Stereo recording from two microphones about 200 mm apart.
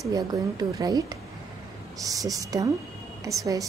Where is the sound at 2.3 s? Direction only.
15° right (ahead or behind).